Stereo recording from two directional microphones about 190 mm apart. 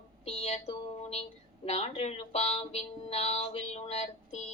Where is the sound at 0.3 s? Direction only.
35° left (ahead or behind).